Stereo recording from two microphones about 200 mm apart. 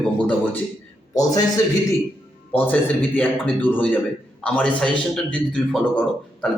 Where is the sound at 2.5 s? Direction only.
10° left (ahead or behind).